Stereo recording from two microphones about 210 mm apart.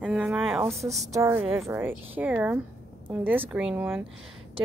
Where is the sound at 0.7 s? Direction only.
30° right (ahead or behind).